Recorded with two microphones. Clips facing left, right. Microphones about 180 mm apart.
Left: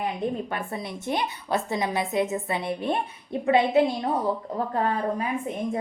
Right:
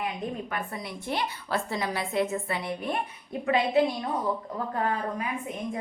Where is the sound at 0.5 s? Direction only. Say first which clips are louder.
Left 3 dB; 25° left (ahead or behind).